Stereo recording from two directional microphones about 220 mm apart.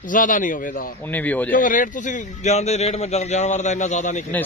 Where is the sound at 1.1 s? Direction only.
5° left (ahead or behind).